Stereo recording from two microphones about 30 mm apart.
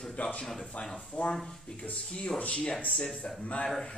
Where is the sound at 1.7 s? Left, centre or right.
Left.